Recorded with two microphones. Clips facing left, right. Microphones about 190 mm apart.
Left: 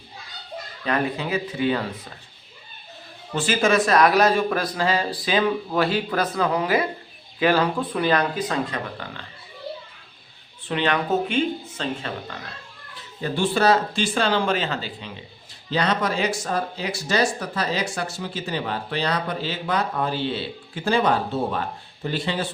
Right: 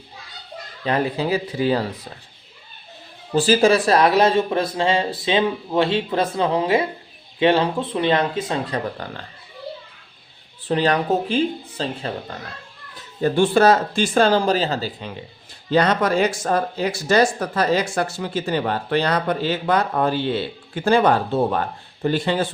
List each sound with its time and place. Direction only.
0.9 s speech: 30° right (ahead or behind)
3.3 s speech: 35° right (ahead or behind)
10.6 s speech: 35° right (ahead or behind)
13.2 s speech: 50° right (ahead or behind)
15.7 s speech: 50° right (ahead or behind)